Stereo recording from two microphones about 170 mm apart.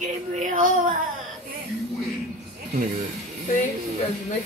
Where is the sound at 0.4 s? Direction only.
50° right (ahead or behind).